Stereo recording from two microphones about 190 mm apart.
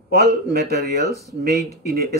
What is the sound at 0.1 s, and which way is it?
Speech, 55° right (ahead or behind).